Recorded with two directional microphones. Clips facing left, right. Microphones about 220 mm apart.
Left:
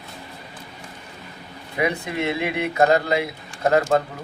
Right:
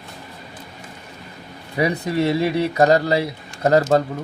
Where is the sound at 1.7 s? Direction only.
35° right (ahead or behind).